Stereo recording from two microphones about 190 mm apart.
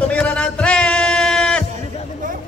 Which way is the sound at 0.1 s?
5° left (ahead or behind).